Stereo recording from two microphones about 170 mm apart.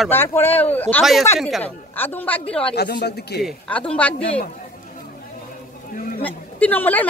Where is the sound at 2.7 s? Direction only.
70° left (ahead or behind).